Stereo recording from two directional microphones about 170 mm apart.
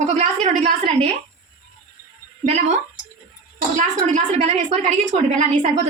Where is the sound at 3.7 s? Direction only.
45° right (ahead or behind).